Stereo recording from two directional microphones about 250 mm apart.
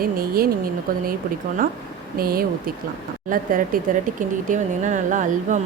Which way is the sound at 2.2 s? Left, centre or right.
Right.